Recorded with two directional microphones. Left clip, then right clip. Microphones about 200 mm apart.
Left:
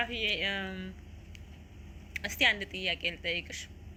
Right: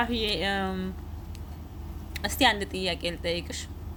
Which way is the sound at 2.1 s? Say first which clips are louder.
Right 4 dB; 30° right (ahead or behind).